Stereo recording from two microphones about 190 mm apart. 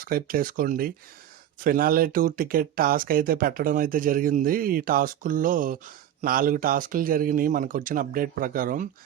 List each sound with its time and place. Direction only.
0.0 s speech: 50° right (ahead or behind)